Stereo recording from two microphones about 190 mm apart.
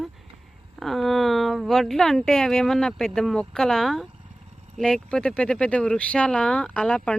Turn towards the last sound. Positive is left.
turn(degrees=5)  # may be behind; listen again after turning